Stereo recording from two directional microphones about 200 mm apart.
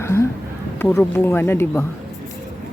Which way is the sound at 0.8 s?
10° left (ahead or behind).